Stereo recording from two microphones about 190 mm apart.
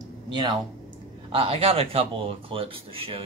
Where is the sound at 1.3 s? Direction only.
30° right (ahead or behind).